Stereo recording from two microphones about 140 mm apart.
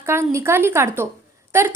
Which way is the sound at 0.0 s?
20° right (ahead or behind).